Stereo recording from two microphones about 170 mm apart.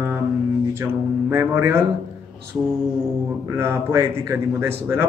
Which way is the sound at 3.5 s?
15° right (ahead or behind).